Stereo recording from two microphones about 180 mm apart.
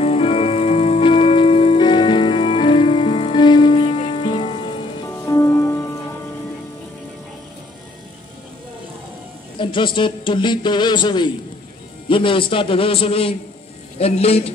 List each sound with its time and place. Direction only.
0.0 s music: 35° left (ahead or behind)
5.2 s music: 15° left (ahead or behind)
9.6 s a man's voice: 25° left (ahead or behind)